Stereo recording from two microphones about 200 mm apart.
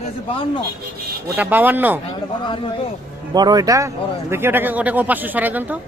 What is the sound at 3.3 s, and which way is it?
Moo, 20° right (ahead or behind).